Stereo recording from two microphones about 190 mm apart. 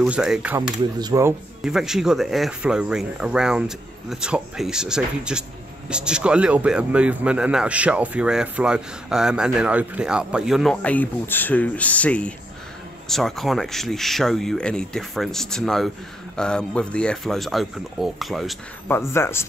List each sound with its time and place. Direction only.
0.0 s speech: 5° right (ahead or behind)
0.9 s speech: 20° right (ahead or behind)
1.6 s speech: 5° right (ahead or behind)
18.9 s speech: 15° left (ahead or behind)